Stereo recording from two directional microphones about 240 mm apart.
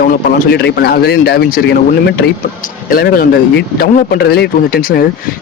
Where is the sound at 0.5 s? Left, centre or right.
Left.